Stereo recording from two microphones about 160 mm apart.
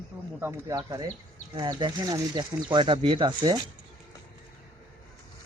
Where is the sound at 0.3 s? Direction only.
15° right (ahead or behind).